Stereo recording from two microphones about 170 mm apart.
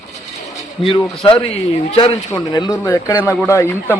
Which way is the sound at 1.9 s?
35° left (ahead or behind).